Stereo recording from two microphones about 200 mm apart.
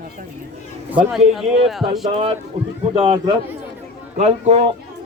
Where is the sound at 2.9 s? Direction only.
25° right (ahead or behind).